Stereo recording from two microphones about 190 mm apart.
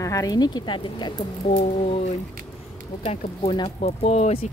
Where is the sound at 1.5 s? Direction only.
35° left (ahead or behind).